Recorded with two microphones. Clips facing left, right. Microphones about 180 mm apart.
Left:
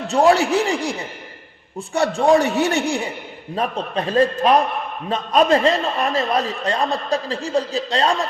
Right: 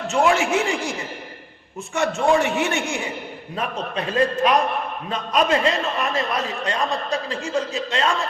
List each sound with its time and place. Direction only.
0.1 s a man's voice: 35° left (ahead or behind)